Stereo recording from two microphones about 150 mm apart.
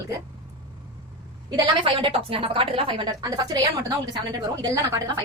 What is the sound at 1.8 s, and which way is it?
A woman's voice, 35° right (ahead or behind).